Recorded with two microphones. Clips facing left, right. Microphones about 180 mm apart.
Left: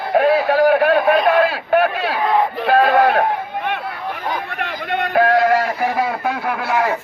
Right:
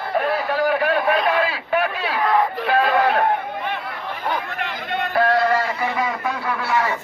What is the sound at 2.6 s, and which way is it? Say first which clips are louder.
Speech: left 7 dB; 60° left (ahead or behind).